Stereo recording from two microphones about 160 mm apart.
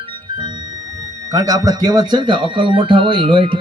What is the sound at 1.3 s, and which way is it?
Speech, 20° right (ahead or behind).